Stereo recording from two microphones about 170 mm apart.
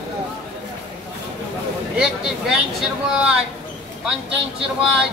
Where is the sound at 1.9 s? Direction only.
5° right (ahead or behind).